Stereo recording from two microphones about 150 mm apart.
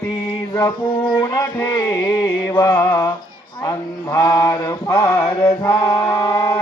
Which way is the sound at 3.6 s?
20° left (ahead or behind).